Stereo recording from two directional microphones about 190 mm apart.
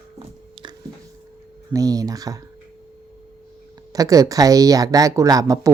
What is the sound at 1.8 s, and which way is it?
Speech, 20° right (ahead or behind).